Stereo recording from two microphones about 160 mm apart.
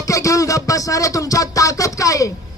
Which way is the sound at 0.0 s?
20° left (ahead or behind).